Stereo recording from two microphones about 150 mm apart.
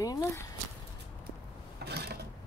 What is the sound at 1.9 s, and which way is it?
Mechanisms, 90° right.